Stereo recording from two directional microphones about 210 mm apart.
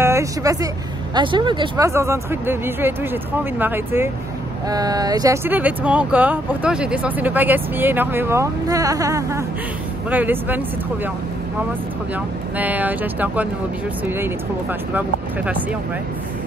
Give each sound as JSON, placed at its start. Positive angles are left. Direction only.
{"t": 0.0, "sound": "speech", "side_deg": -15}
{"t": 12.5, "sound": "speech", "side_deg": -5}